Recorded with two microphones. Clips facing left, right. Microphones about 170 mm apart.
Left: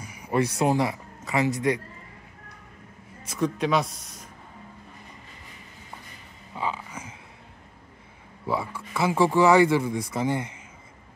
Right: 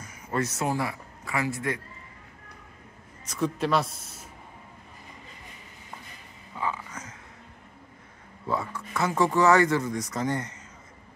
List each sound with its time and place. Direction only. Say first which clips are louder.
0.0 s speech: left 4 dB; 10° left (ahead or behind)
3.3 s speech: left 1 dB; 5° right (ahead or behind)
6.5 s a sound: left 1 dB; 15° left (ahead or behind)
8.5 s speech: left 1 dB; 10° left (ahead or behind)